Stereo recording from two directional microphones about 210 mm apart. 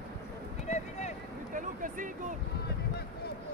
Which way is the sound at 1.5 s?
40° right (ahead or behind).